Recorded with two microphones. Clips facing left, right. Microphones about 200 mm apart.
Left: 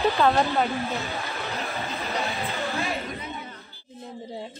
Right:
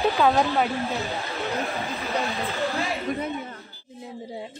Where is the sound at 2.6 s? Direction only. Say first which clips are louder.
Right 3 dB; centre (ahead or behind).